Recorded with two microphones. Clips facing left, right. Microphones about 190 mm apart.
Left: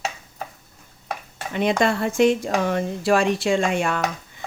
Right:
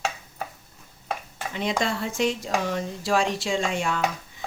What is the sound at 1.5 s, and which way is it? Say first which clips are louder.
Speech: left 6 dB; 55° left (ahead or behind).